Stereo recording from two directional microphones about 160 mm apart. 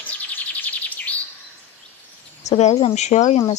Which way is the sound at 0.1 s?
10° left (ahead or behind).